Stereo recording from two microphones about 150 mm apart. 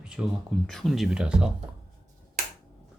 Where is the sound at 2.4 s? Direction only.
85° right.